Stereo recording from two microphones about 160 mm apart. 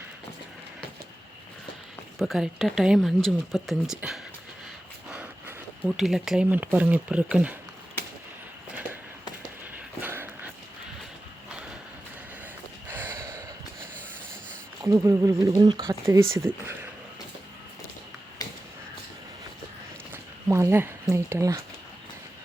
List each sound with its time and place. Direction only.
2.1 s speech: centre (ahead or behind)
10.0 s a sound: 10° right (ahead or behind)
12.9 s gasp: 10° right (ahead or behind)
14.8 s speech: 20° right (ahead or behind)
18.4 s a sound: 25° left (ahead or behind)
20.5 s speech: 15° right (ahead or behind)